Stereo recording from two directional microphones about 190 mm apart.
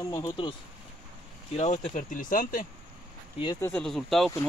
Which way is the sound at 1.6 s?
40° left (ahead or behind).